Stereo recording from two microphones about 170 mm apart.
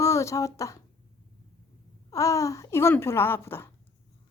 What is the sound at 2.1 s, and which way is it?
Speech, 20° left (ahead or behind).